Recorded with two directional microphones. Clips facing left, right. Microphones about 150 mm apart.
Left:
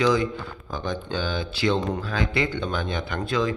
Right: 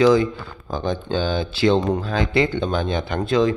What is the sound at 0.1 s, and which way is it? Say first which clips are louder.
Speech: right 6 dB; 30° right (ahead or behind).